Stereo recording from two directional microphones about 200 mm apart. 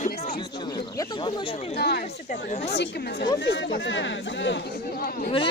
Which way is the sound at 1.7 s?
55° left (ahead or behind).